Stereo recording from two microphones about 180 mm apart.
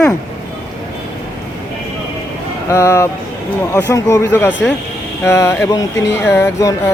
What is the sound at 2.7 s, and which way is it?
Speech, 15° left (ahead or behind).